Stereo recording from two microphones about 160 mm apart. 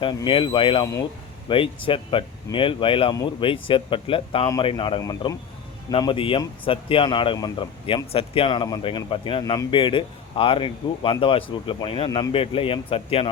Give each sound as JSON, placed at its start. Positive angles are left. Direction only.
{"t": 0.3, "sound": "speech", "side_deg": 30}
{"t": 9.4, "sound": "speech", "side_deg": 20}
{"t": 9.7, "sound": "speech", "side_deg": 30}